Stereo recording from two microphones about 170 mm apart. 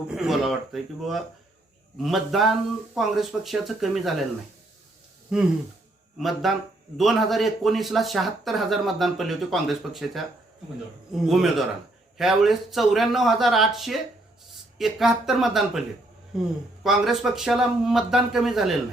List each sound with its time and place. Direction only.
0.1 s speech: centre (ahead or behind)
5.3 s speech: 5° right (ahead or behind)